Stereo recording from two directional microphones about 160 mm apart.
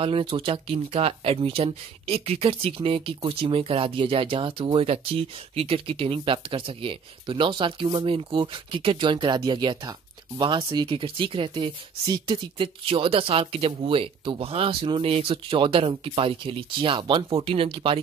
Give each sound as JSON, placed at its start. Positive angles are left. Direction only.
{"t": 0.0, "sound": "speech", "side_deg": -35}